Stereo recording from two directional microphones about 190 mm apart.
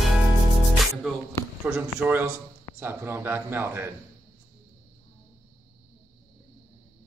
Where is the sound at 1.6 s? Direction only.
10° right (ahead or behind).